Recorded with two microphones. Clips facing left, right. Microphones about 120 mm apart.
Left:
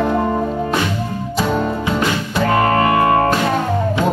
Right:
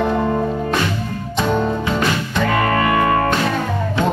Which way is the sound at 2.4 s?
35° left (ahead or behind).